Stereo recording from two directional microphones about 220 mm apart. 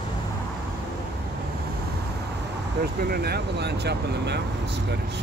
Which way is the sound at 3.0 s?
45° right (ahead or behind).